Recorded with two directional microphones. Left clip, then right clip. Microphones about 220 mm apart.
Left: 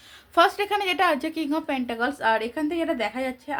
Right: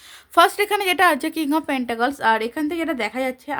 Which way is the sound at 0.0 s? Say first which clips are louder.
Right 4 dB; 45° right (ahead or behind).